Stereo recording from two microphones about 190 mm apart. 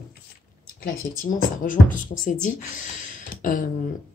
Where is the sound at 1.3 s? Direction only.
45° left (ahead or behind).